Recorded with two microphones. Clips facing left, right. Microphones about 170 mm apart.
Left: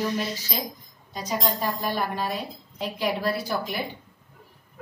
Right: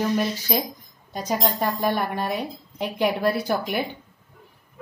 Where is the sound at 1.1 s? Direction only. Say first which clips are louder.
Right 3 dB; 55° right (ahead or behind).